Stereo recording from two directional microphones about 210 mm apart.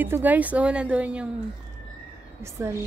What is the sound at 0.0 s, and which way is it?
A woman's voice, 10° right (ahead or behind).